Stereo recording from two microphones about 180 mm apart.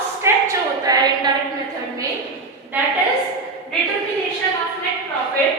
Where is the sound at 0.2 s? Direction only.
20° right (ahead or behind).